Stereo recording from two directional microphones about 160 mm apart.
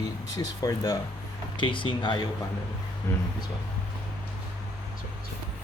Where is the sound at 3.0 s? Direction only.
15° left (ahead or behind).